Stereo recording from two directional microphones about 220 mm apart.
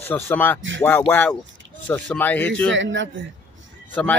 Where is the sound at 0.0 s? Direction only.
10° left (ahead or behind).